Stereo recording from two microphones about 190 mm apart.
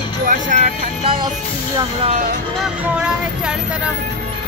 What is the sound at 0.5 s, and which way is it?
Music, 40° right (ahead or behind).